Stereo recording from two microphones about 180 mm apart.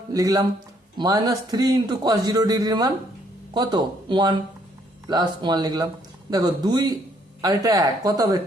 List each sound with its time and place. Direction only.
0.1 s a man's voice: 20° right (ahead or behind)